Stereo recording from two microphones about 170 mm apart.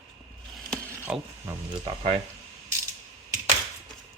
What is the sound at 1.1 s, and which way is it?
Speech, 15° right (ahead or behind).